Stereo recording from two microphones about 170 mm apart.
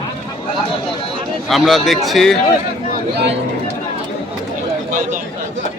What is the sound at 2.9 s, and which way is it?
Speech, 75° right (ahead or behind).